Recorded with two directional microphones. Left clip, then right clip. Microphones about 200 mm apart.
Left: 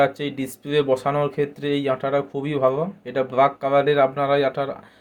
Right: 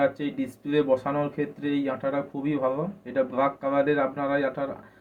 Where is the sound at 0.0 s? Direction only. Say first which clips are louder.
Left 5 dB; 55° left (ahead or behind).